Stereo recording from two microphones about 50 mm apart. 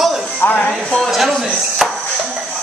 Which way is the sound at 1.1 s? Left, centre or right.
Centre.